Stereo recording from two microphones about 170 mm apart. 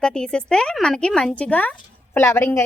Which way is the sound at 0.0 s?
5° left (ahead or behind).